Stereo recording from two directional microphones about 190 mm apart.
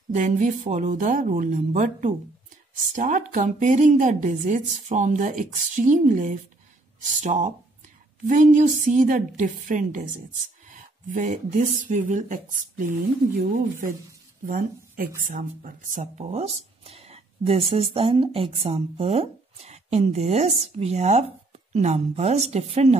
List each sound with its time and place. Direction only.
0.1 s a woman's voice: 40° right (ahead or behind)